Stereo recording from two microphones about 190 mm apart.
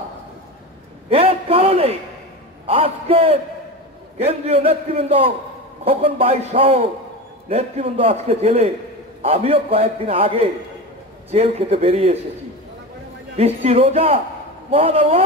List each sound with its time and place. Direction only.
1.1 s a man's voice: 30° right (ahead or behind)
13.4 s a man's voice: 35° right (ahead or behind)